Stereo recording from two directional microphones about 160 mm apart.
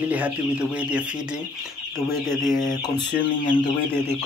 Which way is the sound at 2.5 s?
55° left (ahead or behind).